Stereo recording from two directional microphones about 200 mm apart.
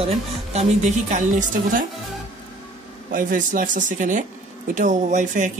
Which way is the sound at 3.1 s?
40° right (ahead or behind).